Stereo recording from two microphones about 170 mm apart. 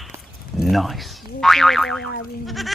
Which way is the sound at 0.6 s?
Centre (ahead or behind).